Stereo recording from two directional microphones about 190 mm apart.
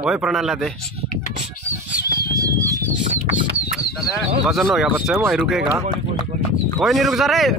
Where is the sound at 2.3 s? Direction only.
15° right (ahead or behind).